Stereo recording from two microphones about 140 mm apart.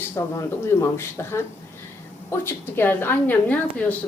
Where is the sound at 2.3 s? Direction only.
15° left (ahead or behind).